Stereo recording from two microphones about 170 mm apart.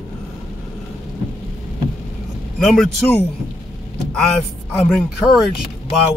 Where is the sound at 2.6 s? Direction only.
5° left (ahead or behind).